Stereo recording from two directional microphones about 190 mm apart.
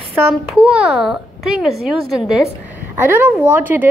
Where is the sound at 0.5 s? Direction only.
5° right (ahead or behind).